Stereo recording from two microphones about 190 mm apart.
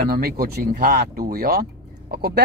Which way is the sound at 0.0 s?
50° right (ahead or behind).